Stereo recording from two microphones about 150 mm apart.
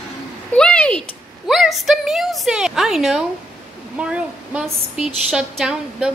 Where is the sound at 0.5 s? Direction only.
5° left (ahead or behind).